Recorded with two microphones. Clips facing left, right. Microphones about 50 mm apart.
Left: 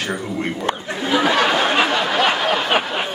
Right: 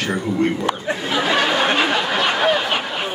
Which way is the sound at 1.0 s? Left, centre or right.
Centre.